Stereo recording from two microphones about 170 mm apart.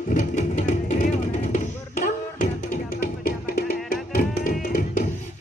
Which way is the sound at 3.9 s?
55° left (ahead or behind).